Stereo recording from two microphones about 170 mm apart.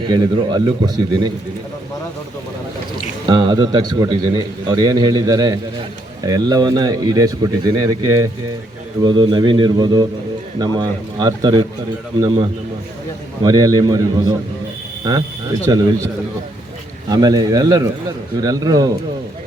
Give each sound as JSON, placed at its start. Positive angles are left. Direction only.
{"t": 0.0, "sound": "speech", "side_deg": -25}
{"t": 3.2, "sound": "speech", "side_deg": -25}
{"t": 13.4, "sound": "speech", "side_deg": -20}
{"t": 15.6, "sound": "speech", "side_deg": -20}
{"t": 17.1, "sound": "speech", "side_deg": -25}